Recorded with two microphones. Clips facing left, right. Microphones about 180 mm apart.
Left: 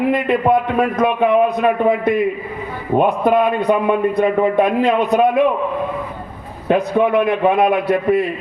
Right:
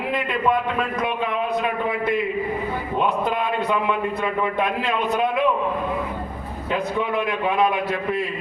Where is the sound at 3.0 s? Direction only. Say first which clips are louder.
Left 9 dB; 55° left (ahead or behind).